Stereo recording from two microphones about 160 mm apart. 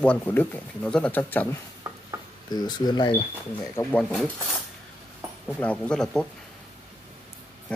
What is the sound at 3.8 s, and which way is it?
Speech, 20° left (ahead or behind).